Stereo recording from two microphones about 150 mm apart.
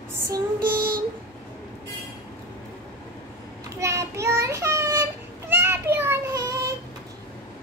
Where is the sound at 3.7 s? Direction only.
20° right (ahead or behind).